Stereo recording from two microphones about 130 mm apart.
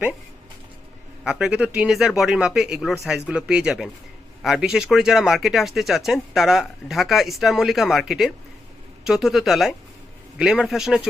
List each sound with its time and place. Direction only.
1.2 s speech: 5° right (ahead or behind)